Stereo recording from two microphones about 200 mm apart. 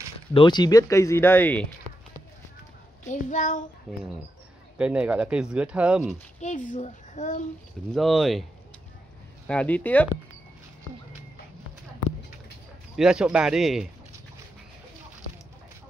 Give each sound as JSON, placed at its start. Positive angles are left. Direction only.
{"t": 0.3, "sound": "speech", "side_deg": 25}
{"t": 3.1, "sound": "a child's voice", "side_deg": 40}
{"t": 4.7, "sound": "speech", "side_deg": -5}
{"t": 6.4, "sound": "a child's voice", "side_deg": 40}
{"t": 7.9, "sound": "speech", "side_deg": 0}
{"t": 9.5, "sound": "speech", "side_deg": 5}
{"t": 12.9, "sound": "speech", "side_deg": -5}